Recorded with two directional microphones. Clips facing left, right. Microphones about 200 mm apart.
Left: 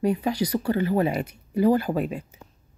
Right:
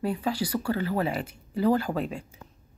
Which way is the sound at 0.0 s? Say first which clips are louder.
Left 4 dB; 20° left (ahead or behind).